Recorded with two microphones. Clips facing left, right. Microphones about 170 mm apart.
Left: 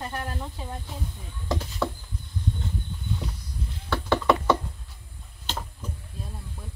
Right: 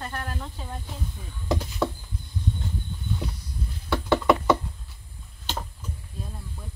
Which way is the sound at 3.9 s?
10° right (ahead or behind).